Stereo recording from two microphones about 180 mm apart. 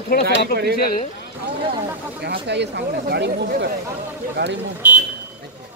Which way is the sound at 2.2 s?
70° right (ahead or behind).